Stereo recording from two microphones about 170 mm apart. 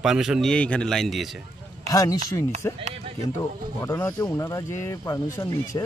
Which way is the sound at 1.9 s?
20° left (ahead or behind).